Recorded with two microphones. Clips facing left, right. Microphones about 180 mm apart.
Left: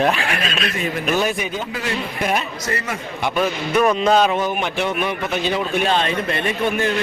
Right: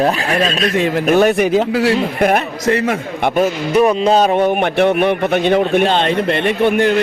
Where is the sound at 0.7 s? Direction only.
90° right.